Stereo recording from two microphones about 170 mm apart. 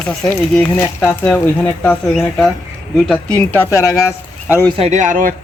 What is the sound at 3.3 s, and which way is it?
Speech, 10° left (ahead or behind).